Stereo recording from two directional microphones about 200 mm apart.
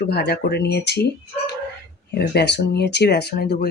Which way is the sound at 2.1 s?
55° left (ahead or behind).